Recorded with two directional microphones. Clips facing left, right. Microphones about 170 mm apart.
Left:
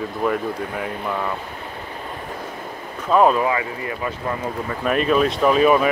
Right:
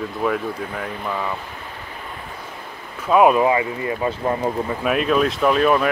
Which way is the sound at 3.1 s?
10° right (ahead or behind).